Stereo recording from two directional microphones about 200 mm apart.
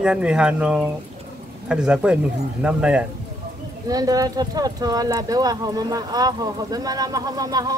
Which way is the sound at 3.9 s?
20° right (ahead or behind).